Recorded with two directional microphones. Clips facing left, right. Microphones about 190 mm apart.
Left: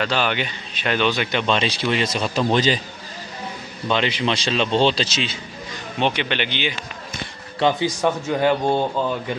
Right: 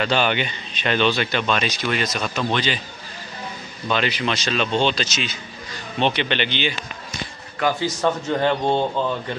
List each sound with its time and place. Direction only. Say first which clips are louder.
0.0 s speech: right 1 dB; centre (ahead or behind); by 2.8 s 35° left (ahead or behind)
3.8 s speech: left 1 dB; 20° left (ahead or behind)
5.9 s speech: right 1 dB; 10° left (ahead or behind)
7.8 s speech: left 1 dB; 10° left (ahead or behind)